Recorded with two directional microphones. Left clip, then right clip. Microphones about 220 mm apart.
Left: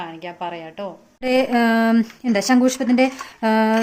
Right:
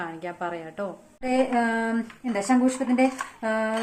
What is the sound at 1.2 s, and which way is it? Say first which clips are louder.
Speech: left 5 dB; 45° left (ahead or behind).